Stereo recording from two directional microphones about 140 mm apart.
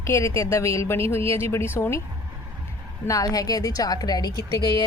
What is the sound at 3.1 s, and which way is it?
A woman's voice, 25° left (ahead or behind).